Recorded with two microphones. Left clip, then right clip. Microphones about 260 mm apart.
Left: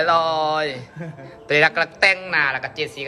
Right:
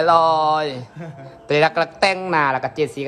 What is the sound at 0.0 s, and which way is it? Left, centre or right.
A man's voice, centre.